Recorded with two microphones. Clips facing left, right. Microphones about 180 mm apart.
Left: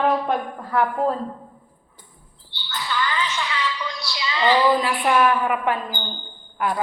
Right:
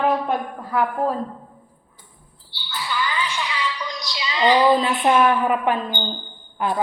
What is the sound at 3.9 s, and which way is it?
A woman's voice, 20° right (ahead or behind).